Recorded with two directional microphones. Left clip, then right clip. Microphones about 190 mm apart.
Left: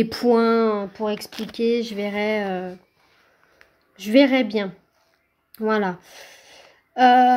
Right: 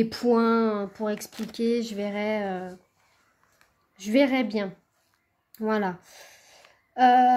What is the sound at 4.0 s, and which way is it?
A woman's voice, 20° left (ahead or behind).